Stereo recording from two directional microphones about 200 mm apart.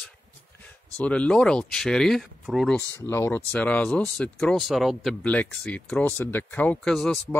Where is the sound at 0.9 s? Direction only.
5° left (ahead or behind).